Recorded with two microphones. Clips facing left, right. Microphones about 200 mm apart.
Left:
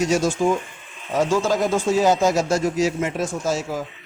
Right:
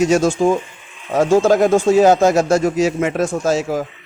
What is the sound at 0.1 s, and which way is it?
A man's voice, 50° right (ahead or behind).